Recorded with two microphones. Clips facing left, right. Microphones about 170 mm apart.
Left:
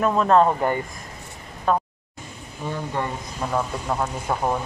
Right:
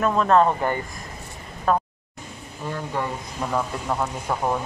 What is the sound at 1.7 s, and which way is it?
Speech, centre (ahead or behind).